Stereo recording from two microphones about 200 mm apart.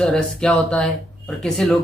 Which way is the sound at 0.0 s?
5° left (ahead or behind).